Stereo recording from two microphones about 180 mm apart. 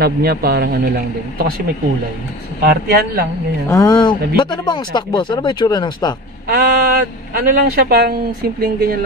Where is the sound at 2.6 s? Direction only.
60° right (ahead or behind).